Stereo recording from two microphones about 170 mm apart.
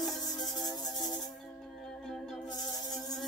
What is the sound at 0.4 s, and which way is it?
Music, centre (ahead or behind).